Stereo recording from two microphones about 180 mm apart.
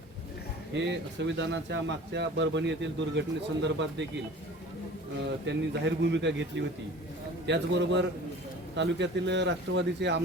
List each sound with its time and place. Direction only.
0.7 s speech: 80° right
5.5 s speech: 80° right